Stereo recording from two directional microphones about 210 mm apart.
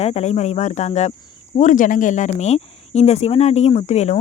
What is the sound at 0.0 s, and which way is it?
Speech, 30° left (ahead or behind).